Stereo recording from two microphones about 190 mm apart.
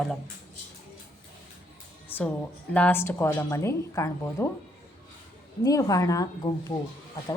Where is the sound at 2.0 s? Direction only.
10° left (ahead or behind).